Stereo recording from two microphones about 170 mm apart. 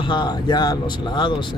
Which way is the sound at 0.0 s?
25° left (ahead or behind).